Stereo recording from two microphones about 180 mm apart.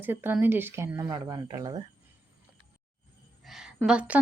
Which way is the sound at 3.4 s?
Centre (ahead or behind).